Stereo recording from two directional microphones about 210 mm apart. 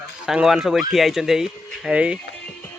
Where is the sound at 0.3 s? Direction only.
Centre (ahead or behind).